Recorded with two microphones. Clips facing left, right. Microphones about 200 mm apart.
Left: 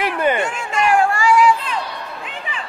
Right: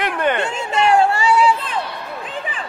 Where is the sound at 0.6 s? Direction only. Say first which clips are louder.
Right 2 dB; 25° right (ahead or behind).